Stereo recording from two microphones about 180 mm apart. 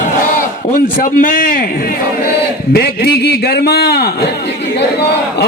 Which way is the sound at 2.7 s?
60° left (ahead or behind).